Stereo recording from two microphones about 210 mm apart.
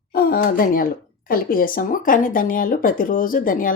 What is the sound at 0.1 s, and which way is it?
Speech, 45° left (ahead or behind).